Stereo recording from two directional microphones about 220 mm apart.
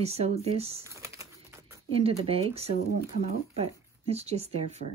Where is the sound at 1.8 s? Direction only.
25° right (ahead or behind).